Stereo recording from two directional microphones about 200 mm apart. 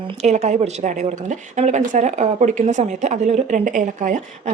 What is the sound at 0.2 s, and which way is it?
A woman's voice, 35° right (ahead or behind).